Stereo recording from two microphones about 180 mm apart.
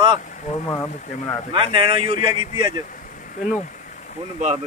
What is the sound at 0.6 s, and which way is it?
Speech, 15° left (ahead or behind).